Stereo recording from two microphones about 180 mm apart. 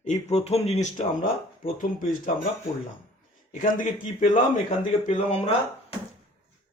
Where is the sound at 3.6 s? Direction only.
45° left (ahead or behind).